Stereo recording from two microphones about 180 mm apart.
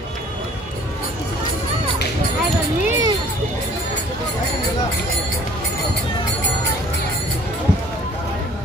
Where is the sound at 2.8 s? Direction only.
15° right (ahead or behind).